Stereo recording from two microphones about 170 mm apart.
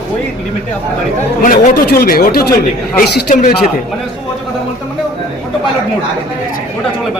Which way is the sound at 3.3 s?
50° left (ahead or behind).